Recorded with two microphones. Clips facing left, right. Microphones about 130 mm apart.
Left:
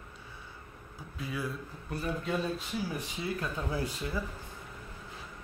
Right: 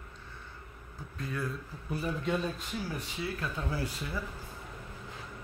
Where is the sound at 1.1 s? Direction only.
5° left (ahead or behind).